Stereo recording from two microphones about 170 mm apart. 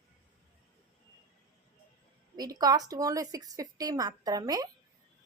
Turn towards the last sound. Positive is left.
turn(degrees=-20)  # may be behind; listen again after turning